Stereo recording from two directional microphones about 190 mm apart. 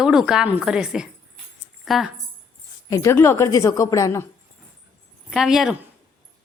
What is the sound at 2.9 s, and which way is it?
A woman's voice, 15° left (ahead or behind).